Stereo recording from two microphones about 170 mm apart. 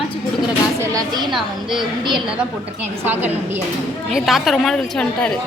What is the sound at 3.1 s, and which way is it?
Speech, 10° right (ahead or behind).